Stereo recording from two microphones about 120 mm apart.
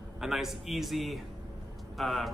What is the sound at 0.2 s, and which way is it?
A man's voice, centre (ahead or behind).